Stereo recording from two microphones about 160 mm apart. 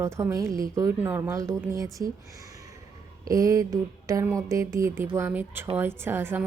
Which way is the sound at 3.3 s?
20° right (ahead or behind).